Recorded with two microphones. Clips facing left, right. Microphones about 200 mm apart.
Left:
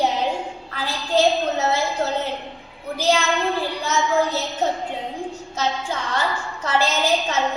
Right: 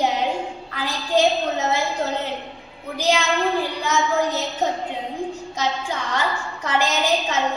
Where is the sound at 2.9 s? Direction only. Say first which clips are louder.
Left 1 dB; 15° right (ahead or behind).